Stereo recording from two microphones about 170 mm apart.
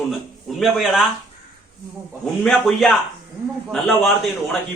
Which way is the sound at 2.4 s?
Centre (ahead or behind).